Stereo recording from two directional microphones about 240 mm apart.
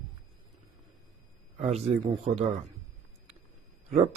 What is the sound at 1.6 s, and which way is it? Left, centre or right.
Mantra, right.